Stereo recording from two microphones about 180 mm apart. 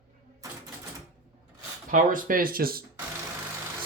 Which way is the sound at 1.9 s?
50° right (ahead or behind).